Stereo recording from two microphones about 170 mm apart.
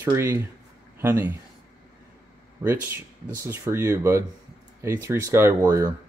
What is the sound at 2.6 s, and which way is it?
Speech, 10° right (ahead or behind).